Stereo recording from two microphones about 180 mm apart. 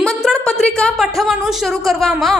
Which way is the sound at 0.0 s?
5° left (ahead or behind).